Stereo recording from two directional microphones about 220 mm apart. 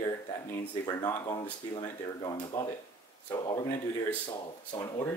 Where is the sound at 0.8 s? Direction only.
15° left (ahead or behind).